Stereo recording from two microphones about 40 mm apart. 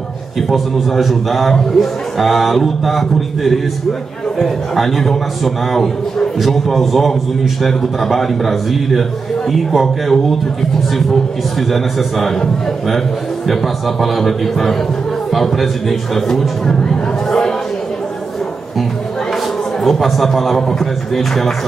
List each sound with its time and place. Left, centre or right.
0.4 s a man's voice: centre
11.7 s a man's voice: centre
13.5 s a man's voice: centre
16.6 s chatter: centre
19.8 s a man's voice: centre